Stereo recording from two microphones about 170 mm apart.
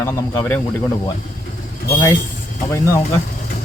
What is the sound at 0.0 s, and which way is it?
Speech, 15° left (ahead or behind).